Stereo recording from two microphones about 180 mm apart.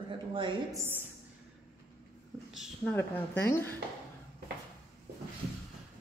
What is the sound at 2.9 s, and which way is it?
Speech, 10° left (ahead or behind).